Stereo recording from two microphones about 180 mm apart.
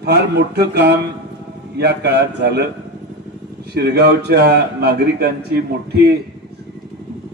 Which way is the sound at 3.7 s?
65° right (ahead or behind).